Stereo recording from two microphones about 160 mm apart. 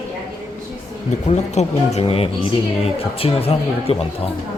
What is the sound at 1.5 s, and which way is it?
Speech, 40° left (ahead or behind).